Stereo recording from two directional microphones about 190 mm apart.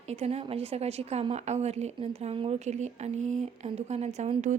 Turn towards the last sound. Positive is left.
turn(degrees=-40)  # may be behind; listen again after turning